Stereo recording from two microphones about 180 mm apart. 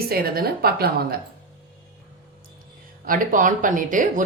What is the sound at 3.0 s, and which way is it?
A woman's voice, 50° right (ahead or behind).